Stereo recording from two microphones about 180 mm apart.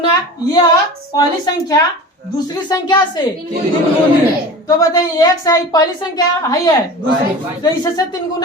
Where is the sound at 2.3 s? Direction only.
20° left (ahead or behind).